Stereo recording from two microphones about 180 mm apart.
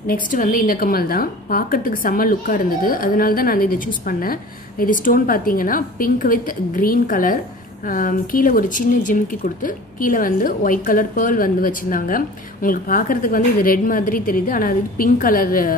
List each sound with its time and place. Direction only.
0.0 s a woman's voice: 50° left (ahead or behind)